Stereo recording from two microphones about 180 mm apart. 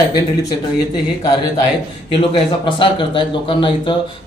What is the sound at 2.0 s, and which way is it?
Speech, 25° left (ahead or behind).